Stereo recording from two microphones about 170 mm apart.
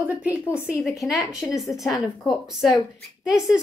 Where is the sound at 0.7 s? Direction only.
Centre (ahead or behind).